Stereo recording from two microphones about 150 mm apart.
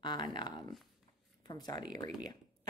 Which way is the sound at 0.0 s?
30° left (ahead or behind).